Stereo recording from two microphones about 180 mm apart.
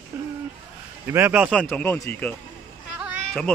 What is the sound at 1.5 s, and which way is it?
Speech, 5° left (ahead or behind).